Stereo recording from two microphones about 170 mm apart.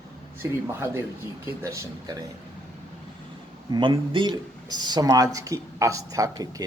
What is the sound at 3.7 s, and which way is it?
Speech, 30° right (ahead or behind).